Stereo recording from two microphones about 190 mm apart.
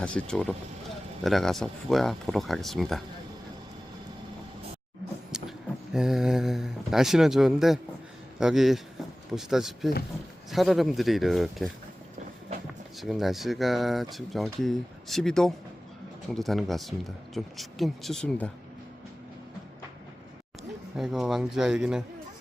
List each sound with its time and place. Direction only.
0.0 s speech: 5° left (ahead or behind)
5.3 s speech: 5° right (ahead or behind)
13.0 s speech: centre (ahead or behind)
20.9 s speech: 5° right (ahead or behind)